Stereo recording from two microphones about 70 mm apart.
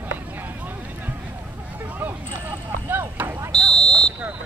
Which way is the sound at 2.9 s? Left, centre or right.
Right.